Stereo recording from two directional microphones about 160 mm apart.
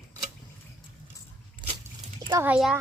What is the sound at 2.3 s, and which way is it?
Speech, 15° right (ahead or behind).